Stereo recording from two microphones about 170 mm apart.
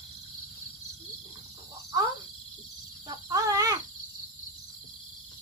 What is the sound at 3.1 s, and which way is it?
Cricket, 20° right (ahead or behind).